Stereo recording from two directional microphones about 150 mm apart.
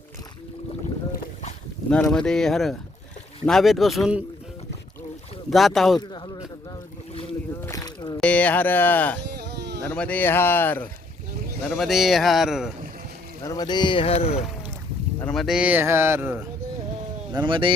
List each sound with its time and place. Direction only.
1.9 s speech: 5° left (ahead or behind)
5.5 s speech: centre (ahead or behind)
6.0 s a sound: 25° left (ahead or behind)
7.6 s rowboat: 20° left (ahead or behind)
8.2 s speech: 10° left (ahead or behind)
11.7 s speech: centre (ahead or behind)
13.4 s speech: 25° left (ahead or behind); by 14.4 s 40° left (ahead or behind)
15.3 s speech: centre (ahead or behind); by 16.4 s 15° right (ahead or behind)
17.3 s speech: 30° right (ahead or behind)